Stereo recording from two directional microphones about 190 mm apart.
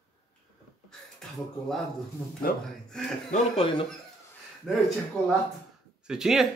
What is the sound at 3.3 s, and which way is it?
Speech, 35° left (ahead or behind).